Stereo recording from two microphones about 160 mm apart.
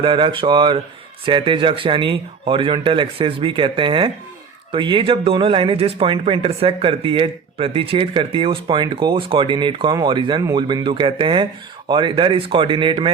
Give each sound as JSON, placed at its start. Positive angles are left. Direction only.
{"t": 0.0, "sound": "speech", "side_deg": -30}